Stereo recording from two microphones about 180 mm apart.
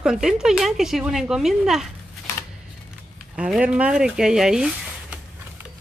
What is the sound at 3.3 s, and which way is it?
Speech, 5° right (ahead or behind).